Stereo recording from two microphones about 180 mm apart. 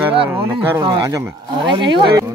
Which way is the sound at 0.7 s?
20° right (ahead or behind).